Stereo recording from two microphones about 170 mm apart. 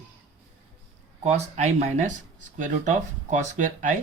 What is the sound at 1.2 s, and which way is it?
Speech, 40° right (ahead or behind).